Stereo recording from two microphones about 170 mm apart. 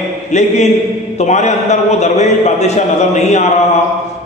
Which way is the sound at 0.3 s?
45° left (ahead or behind).